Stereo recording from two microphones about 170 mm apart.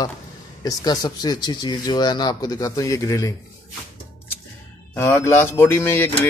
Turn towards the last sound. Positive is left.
turn(degrees=15)  # may be behind; listen again after turning